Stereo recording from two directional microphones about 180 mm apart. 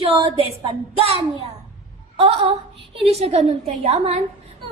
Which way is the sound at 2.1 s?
30° right (ahead or behind).